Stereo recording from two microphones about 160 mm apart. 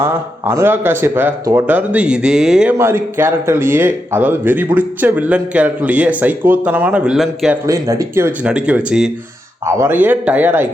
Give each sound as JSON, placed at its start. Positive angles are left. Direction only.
{"t": 0.0, "sound": "speech", "side_deg": -15}
{"t": 2.7, "sound": "speech", "side_deg": -15}
{"t": 7.7, "sound": "speech", "side_deg": -20}
{"t": 9.6, "sound": "speech", "side_deg": -15}